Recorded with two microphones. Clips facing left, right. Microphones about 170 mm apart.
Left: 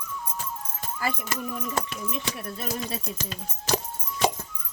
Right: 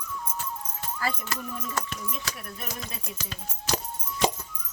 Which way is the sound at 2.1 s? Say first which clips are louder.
Left 5 dB; 25° left (ahead or behind).